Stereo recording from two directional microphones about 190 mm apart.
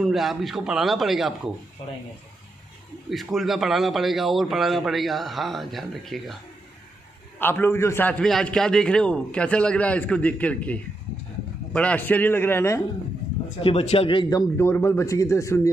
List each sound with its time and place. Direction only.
0.0 s a man's voice: centre (ahead or behind)
3.1 s a man's voice: centre (ahead or behind)
7.3 s a man's voice: 10° left (ahead or behind)
13.6 s speech: 30° left (ahead or behind)
14.6 s a man's voice: 15° left (ahead or behind)